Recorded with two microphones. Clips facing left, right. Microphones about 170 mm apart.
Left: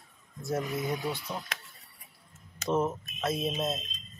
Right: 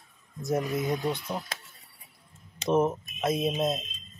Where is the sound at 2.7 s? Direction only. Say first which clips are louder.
Right 4 dB; 15° right (ahead or behind).